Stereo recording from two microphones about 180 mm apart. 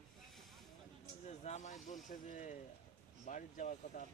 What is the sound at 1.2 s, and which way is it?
Speech, 40° left (ahead or behind).